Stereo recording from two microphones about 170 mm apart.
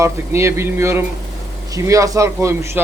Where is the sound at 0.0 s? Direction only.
15° right (ahead or behind).